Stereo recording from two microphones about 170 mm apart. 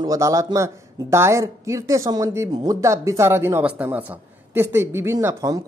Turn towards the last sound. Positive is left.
turn(degrees=-15)  # may be behind; listen again after turning